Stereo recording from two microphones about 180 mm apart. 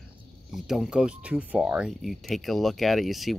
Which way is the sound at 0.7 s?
5° right (ahead or behind).